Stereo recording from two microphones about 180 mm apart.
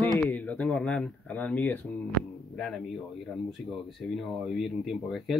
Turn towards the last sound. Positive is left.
turn(degrees=0)  # may be behind; listen again after turning